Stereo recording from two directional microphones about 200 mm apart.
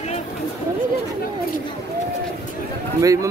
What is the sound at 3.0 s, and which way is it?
Speech, 15° right (ahead or behind).